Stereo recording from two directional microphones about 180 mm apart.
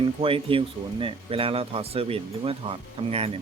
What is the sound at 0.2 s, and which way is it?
Speech, 30° right (ahead or behind).